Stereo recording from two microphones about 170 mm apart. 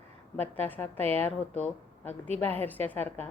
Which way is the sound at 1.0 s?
35° right (ahead or behind).